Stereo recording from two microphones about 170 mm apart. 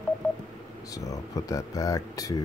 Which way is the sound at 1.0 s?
20° left (ahead or behind).